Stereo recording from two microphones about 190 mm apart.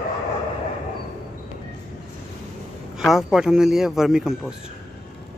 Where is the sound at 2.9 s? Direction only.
Centre (ahead or behind).